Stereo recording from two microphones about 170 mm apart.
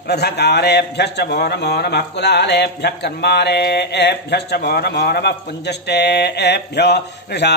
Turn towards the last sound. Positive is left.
turn(degrees=80)